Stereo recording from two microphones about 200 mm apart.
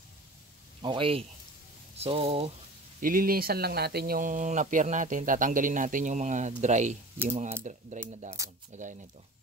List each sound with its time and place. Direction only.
0.8 s speech: 25° right (ahead or behind)
3.0 s speech: 45° right (ahead or behind)
8.4 s speech: 15° right (ahead or behind)